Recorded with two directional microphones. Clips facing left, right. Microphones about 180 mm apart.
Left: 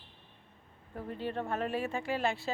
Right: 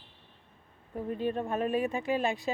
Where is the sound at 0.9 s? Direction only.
20° right (ahead or behind).